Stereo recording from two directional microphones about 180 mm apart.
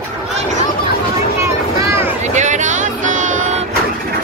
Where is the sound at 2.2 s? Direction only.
40° right (ahead or behind).